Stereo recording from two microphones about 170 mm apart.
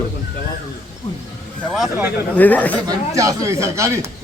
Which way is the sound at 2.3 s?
10° left (ahead or behind).